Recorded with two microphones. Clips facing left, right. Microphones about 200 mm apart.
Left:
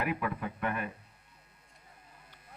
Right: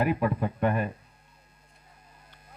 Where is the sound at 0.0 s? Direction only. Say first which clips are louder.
Right 7 dB; 35° right (ahead or behind).